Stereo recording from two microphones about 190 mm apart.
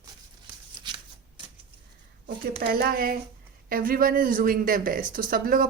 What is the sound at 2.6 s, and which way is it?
Speech, 50° right (ahead or behind).